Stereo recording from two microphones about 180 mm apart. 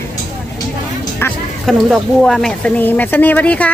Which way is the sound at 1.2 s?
10° left (ahead or behind).